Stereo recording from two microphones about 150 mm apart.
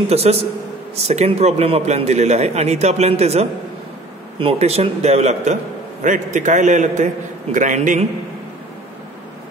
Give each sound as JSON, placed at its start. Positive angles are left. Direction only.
{"t": 0.1, "sound": "a man's voice", "side_deg": -45}